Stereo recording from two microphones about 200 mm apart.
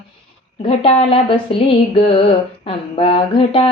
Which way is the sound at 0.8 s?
25° left (ahead or behind).